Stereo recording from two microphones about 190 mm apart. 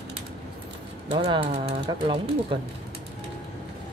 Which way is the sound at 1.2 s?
25° right (ahead or behind).